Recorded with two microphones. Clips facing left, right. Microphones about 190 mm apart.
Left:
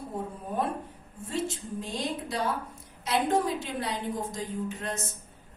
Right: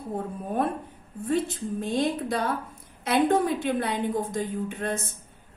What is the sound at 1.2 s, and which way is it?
A woman's voice, 55° right (ahead or behind).